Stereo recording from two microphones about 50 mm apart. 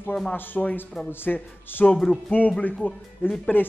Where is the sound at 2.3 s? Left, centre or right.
Left.